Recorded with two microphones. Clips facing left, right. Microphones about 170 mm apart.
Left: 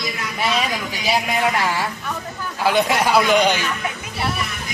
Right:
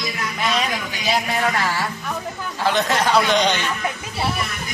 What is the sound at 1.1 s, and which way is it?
Music, 15° left (ahead or behind).